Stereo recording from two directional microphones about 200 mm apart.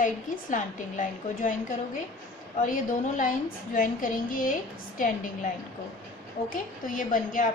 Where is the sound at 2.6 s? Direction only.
40° left (ahead or behind).